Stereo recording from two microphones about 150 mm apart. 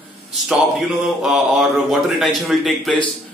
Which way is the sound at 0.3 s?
Centre (ahead or behind).